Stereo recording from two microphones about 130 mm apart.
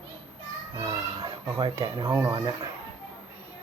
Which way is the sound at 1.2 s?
25° right (ahead or behind).